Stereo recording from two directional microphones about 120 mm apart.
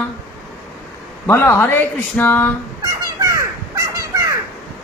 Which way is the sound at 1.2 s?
20° left (ahead or behind).